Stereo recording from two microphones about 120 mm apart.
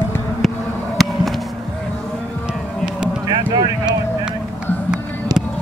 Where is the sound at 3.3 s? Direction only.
40° right (ahead or behind).